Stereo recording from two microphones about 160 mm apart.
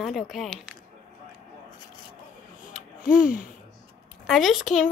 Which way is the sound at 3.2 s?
60° left (ahead or behind).